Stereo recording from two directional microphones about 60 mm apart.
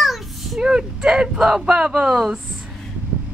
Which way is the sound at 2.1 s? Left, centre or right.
Centre.